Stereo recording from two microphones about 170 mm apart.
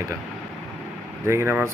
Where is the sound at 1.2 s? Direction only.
15° right (ahead or behind).